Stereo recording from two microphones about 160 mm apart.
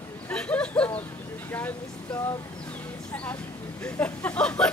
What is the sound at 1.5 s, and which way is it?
Vehicle, 10° left (ahead or behind).